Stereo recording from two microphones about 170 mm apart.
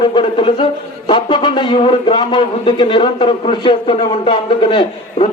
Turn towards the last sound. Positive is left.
turn(degrees=30)  # may be behind; listen again after turning